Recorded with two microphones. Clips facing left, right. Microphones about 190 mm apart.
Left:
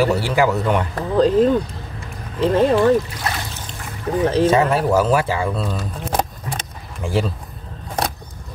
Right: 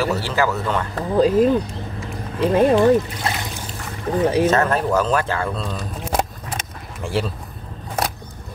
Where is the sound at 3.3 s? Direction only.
25° right (ahead or behind).